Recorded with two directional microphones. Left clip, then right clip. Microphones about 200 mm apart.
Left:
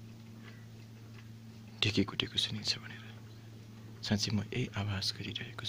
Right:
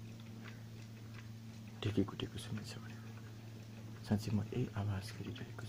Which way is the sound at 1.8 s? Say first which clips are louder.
Left 8 dB; 20° left (ahead or behind).